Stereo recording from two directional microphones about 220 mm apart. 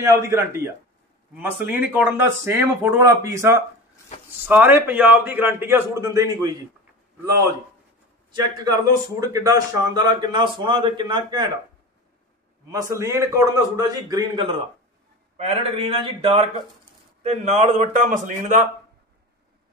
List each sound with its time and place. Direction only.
0.0 s speech: 15° right (ahead or behind)
8.3 s a man's voice: 15° right (ahead or behind)
12.7 s a man's voice: 15° right (ahead or behind); by 18.7 s 35° right (ahead or behind)